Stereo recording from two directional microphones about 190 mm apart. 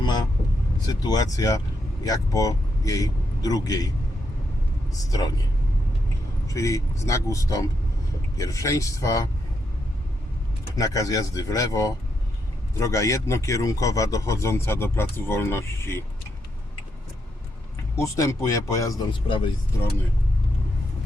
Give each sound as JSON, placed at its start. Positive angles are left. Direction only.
{"t": 0.9, "sound": "speech", "side_deg": 20}
{"t": 4.9, "sound": "speech", "side_deg": 20}
{"t": 6.5, "sound": "speech", "side_deg": 15}
{"t": 10.8, "sound": "speech", "side_deg": 20}
{"t": 18.0, "sound": "speech", "side_deg": 15}